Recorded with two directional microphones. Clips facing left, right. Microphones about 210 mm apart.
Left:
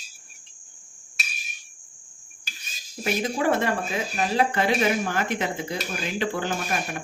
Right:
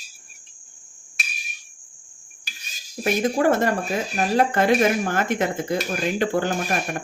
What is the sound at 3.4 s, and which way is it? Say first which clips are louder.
Speech: right 3 dB; 45° right (ahead or behind).